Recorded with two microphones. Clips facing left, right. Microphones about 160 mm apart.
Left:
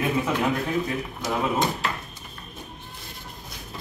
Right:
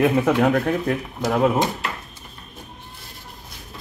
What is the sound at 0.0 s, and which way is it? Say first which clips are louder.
Speech: right 7 dB; 65° right (ahead or behind).